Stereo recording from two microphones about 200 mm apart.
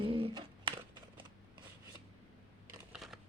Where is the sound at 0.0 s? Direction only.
25° right (ahead or behind).